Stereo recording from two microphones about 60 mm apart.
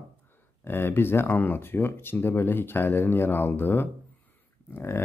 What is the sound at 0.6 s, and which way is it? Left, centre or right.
Speech, left.